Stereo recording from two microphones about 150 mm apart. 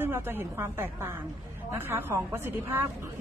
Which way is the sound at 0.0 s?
15° right (ahead or behind).